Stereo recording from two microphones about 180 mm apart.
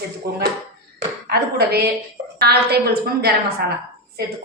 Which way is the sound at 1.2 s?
60° right (ahead or behind).